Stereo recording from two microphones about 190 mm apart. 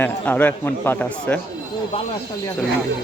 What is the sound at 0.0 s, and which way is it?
Speech, 10° left (ahead or behind).